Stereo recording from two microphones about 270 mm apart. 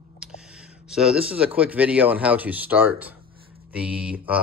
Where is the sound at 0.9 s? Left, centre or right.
Centre.